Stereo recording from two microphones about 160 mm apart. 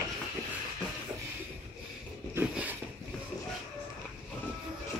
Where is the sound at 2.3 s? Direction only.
10° right (ahead or behind).